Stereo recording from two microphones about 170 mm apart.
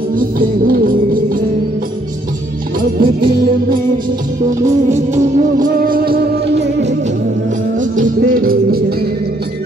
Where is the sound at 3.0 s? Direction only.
60° right (ahead or behind).